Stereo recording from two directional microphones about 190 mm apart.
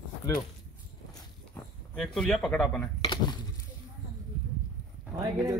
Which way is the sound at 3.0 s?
20° left (ahead or behind).